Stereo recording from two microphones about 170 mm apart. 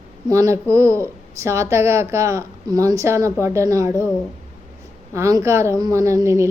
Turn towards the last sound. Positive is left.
turn(degrees=-15)  # may be behind; listen again after turning